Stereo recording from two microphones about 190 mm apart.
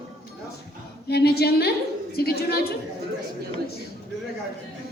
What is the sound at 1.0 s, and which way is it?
A woman's voice, 55° left (ahead or behind).